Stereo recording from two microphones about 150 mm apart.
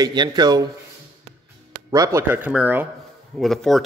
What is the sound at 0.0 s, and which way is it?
Speech, 30° right (ahead or behind).